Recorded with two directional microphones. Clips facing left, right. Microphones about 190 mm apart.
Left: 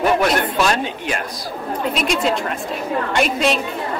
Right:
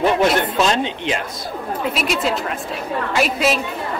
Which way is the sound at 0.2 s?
20° right (ahead or behind).